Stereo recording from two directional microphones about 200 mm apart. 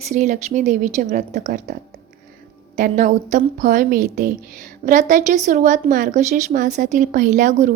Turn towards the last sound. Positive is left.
turn(degrees=-40)  # may be behind; listen again after turning